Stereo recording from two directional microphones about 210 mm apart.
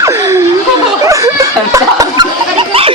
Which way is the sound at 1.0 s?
15° right (ahead or behind).